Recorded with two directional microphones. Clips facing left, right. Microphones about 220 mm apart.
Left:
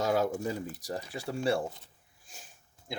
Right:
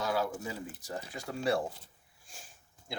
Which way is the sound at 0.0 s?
45° left (ahead or behind).